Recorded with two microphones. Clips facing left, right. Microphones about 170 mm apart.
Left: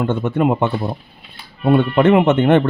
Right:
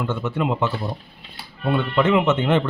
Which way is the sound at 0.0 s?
55° left (ahead or behind).